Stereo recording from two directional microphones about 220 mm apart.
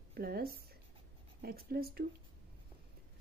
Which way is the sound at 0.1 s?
45° right (ahead or behind).